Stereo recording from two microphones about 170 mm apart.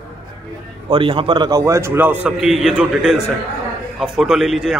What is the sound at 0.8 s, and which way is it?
A man's voice, 30° right (ahead or behind).